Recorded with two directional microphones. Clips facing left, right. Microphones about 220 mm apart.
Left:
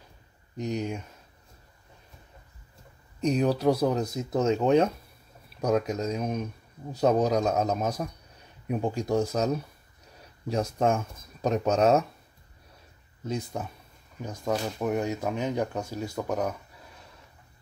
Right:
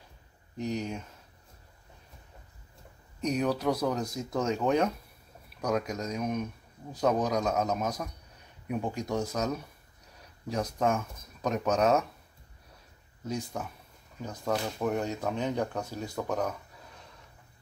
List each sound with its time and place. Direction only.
0.6 s speech: 20° left (ahead or behind)
3.2 s speech: 30° left (ahead or behind)
10.5 s speech: 25° left (ahead or behind)
13.5 s speech: 25° left (ahead or behind)
14.5 s speech: 10° left (ahead or behind)